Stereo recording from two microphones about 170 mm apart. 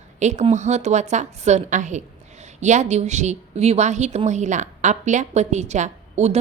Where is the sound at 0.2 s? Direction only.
45° right (ahead or behind).